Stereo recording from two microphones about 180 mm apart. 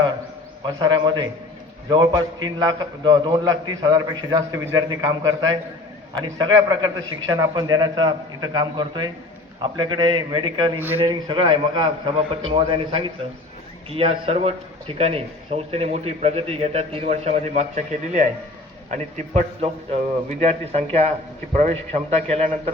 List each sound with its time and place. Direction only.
0.6 s a man's voice: 25° right (ahead or behind)